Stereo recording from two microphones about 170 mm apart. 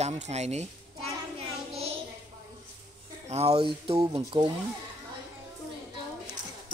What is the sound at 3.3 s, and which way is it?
Speech, 35° right (ahead or behind).